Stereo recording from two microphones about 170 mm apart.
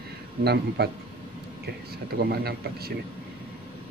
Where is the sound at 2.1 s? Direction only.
65° right (ahead or behind).